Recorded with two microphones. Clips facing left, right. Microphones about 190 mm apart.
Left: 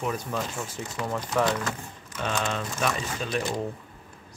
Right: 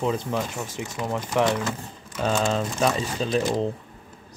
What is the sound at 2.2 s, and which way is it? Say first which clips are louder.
Speech: right 6 dB; 30° right (ahead or behind).